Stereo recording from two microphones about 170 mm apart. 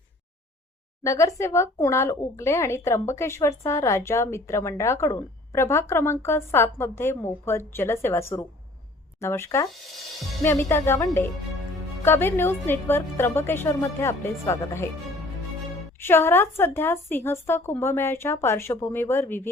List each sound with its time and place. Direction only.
1.0 s speech: 20° left (ahead or behind)
16.0 s speech: 15° left (ahead or behind)